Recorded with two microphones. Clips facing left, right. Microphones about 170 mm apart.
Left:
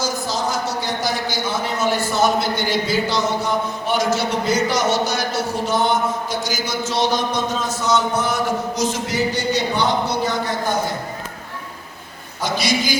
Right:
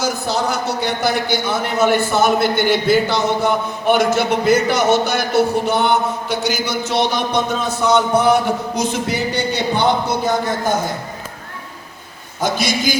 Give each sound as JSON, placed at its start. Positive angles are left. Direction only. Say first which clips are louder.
{"t": 0.0, "sound": "a man's voice", "louder": "right 3 dB", "side_deg": -65}
{"t": 12.4, "sound": "a man's voice", "louder": "right 3 dB", "side_deg": -50}